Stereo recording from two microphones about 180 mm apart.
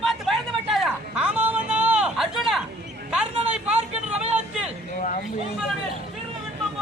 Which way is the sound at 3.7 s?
35° right (ahead or behind).